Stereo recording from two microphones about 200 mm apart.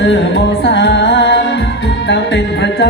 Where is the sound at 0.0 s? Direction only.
65° left (ahead or behind).